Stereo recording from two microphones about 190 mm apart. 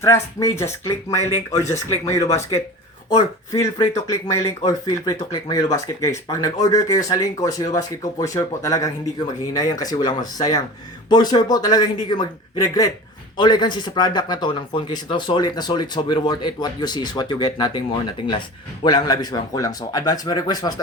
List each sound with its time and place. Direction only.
0.0 s speech: 15° left (ahead or behind)